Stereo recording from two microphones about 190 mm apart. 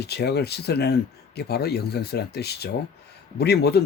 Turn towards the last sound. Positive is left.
turn(degrees=60)  # may be behind; listen again after turning